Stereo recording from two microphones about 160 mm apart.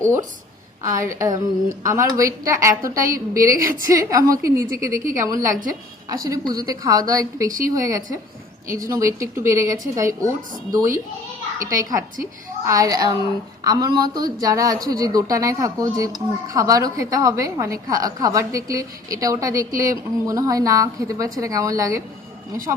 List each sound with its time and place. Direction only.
0.0 s a woman's voice: 20° right (ahead or behind)